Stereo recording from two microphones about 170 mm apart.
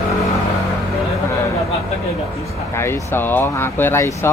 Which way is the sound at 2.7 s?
15° left (ahead or behind).